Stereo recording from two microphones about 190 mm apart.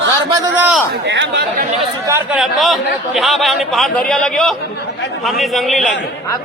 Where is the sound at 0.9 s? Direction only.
65° right (ahead or behind).